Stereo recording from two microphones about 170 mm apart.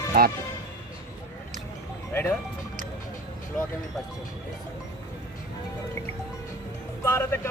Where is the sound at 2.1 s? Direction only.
15° left (ahead or behind).